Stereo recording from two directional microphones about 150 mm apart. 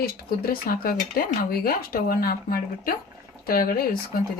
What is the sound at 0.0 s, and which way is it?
Speech, 85° left.